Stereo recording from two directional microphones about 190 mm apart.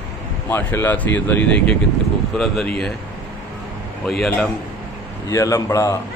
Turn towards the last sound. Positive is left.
turn(degrees=15)  # may be behind; listen again after turning